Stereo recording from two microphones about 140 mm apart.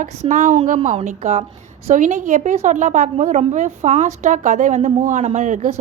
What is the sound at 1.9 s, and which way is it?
A woman's voice, 65° right (ahead or behind).